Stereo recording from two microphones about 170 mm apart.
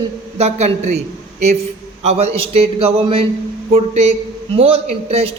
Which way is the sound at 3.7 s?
40° right (ahead or behind).